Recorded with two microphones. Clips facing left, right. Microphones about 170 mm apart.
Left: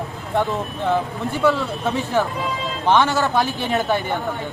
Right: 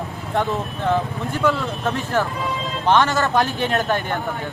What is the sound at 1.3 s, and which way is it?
Speech, 15° left (ahead or behind).